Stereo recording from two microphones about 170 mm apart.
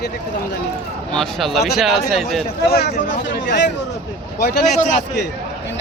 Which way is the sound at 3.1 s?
90° left.